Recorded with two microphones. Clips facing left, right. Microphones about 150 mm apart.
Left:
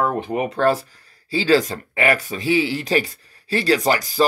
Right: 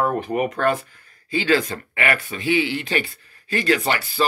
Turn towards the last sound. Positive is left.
turn(degrees=40)  # may be behind; listen again after turning